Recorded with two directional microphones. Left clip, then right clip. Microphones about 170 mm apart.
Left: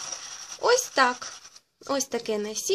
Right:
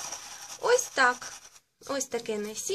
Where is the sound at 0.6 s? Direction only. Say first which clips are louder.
Left 2 dB; 45° left (ahead or behind).